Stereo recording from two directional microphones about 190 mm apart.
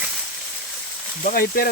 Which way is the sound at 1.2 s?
50° left (ahead or behind).